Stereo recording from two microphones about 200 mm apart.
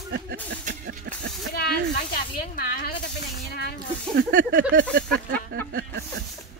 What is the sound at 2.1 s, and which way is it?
Speech, 50° left (ahead or behind).